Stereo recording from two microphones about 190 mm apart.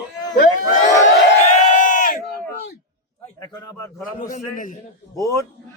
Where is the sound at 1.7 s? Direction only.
45° left (ahead or behind).